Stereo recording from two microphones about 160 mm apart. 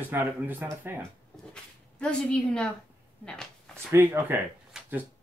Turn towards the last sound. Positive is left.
turn(degrees=-10)  # may be behind; listen again after turning